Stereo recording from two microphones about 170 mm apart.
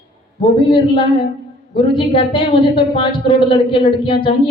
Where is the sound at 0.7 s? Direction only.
30° left (ahead or behind).